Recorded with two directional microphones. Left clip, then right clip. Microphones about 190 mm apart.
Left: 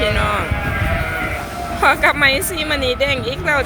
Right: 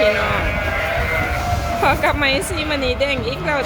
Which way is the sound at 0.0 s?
20° right (ahead or behind).